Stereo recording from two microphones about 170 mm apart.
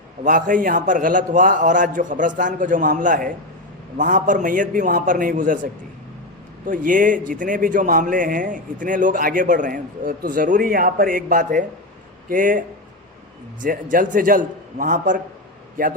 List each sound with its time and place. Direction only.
0.3 s a man's voice: 50° right (ahead or behind)
6.7 s a man's voice: 50° right (ahead or behind)